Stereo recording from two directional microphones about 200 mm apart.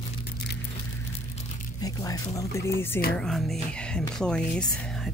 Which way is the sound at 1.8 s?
15° left (ahead or behind).